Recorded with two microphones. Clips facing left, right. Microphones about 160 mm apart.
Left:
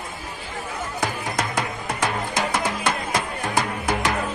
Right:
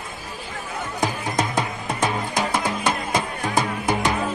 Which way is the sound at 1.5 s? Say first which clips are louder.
Right 1 dB; 20° right (ahead or behind).